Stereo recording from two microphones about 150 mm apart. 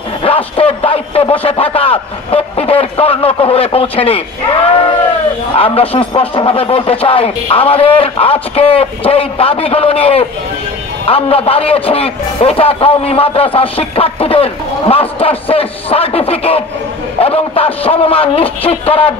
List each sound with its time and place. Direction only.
0.2 s a man's voice: 40° left (ahead or behind)